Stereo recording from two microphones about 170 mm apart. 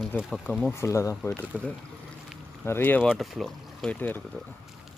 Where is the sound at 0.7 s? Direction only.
15° left (ahead or behind).